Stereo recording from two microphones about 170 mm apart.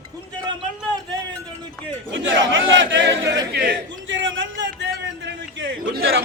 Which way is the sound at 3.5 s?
80° right.